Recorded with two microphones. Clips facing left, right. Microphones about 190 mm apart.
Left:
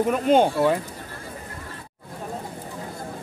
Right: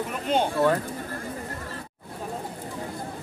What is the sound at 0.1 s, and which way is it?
Speech, 50° left (ahead or behind).